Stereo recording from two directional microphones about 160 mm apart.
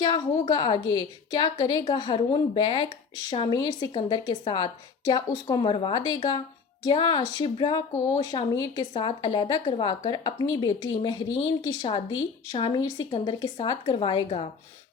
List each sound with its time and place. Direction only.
0.0 s a woman's voice: 25° left (ahead or behind)